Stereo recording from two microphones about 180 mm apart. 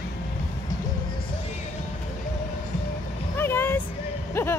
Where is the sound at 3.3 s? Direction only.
10° left (ahead or behind).